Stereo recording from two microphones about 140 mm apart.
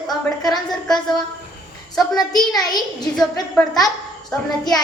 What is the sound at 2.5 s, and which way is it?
Child singing, 30° left (ahead or behind).